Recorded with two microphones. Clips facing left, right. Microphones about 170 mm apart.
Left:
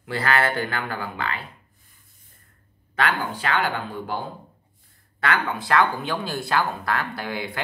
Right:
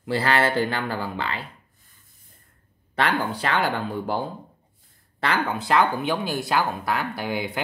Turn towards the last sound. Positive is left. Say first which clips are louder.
# right 2 dB
turn(degrees=-20)  # may be behind; listen again after turning